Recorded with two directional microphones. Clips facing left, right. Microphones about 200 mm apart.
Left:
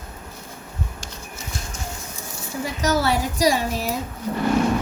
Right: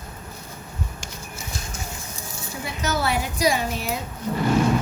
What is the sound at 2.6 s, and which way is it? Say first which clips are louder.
Speech: left 4 dB; 35° left (ahead or behind).